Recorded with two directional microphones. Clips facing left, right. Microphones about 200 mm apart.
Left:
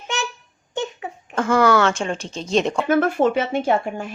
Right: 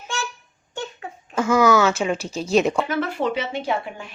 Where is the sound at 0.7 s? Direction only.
20° left (ahead or behind).